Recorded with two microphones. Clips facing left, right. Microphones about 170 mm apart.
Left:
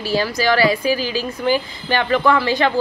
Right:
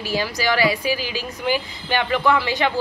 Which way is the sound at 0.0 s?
15° right (ahead or behind).